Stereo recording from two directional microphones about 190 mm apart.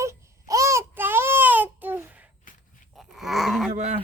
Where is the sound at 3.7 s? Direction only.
35° right (ahead or behind).